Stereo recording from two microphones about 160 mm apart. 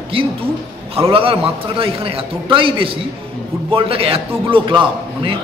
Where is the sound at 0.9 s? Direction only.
35° right (ahead or behind).